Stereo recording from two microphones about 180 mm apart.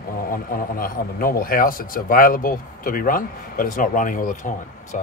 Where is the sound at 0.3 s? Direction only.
50° left (ahead or behind).